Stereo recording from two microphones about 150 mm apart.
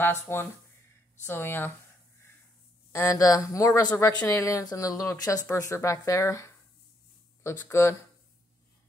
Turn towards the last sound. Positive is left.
turn(degrees=20)  # may be behind; listen again after turning